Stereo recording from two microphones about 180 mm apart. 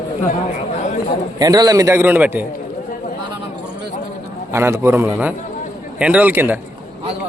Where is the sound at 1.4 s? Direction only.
20° right (ahead or behind).